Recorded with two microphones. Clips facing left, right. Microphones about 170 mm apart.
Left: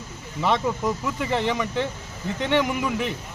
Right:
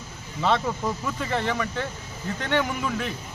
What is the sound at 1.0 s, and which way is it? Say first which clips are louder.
Speech: left 2 dB; 15° left (ahead or behind).